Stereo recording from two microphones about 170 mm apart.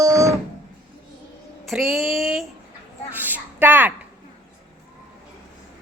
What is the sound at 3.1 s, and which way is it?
Speech, 10° right (ahead or behind).